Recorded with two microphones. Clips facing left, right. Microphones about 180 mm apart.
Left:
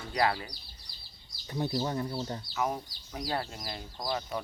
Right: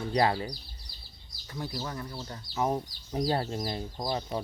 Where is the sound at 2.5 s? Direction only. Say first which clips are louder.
Right 5 dB; 30° right (ahead or behind).